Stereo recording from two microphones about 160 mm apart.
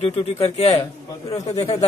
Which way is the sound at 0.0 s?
40° left (ahead or behind).